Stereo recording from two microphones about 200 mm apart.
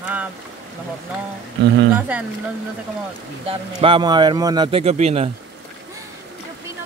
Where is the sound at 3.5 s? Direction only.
25° right (ahead or behind).